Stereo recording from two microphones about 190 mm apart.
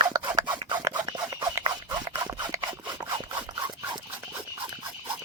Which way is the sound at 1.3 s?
20° right (ahead or behind).